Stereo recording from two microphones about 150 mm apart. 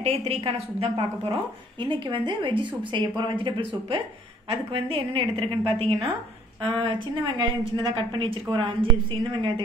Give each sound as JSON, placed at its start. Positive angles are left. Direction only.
{"t": 0.0, "sound": "a woman's voice", "side_deg": -40}